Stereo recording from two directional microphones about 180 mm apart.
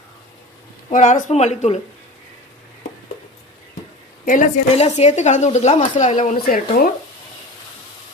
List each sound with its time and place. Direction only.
0.9 s speech: 45° left (ahead or behind)
4.3 s speech: 50° left (ahead or behind)